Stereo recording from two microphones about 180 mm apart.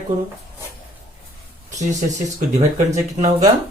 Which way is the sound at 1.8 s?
40° right (ahead or behind).